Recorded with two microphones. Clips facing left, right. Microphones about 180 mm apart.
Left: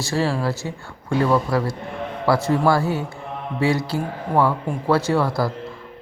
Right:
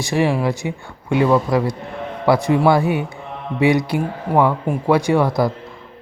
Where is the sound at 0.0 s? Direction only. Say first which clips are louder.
Right 4 dB; 15° right (ahead or behind).